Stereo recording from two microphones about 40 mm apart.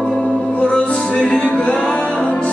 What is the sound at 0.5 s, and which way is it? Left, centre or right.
Music, left.